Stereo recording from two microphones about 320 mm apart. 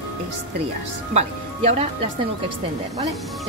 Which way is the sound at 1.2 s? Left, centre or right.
Centre.